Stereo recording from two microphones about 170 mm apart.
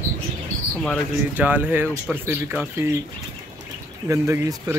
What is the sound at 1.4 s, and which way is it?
Speech, 10° right (ahead or behind).